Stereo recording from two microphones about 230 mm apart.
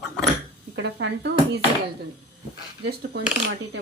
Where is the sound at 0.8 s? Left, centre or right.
Right.